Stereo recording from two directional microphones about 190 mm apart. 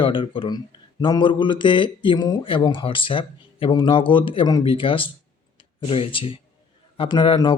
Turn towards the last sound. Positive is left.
turn(degrees=25)  # may be behind; listen again after turning